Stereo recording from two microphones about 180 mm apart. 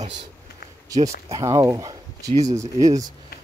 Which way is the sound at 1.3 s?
20° right (ahead or behind).